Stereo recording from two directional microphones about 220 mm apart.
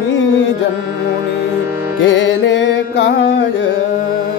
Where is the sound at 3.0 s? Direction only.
50° left (ahead or behind).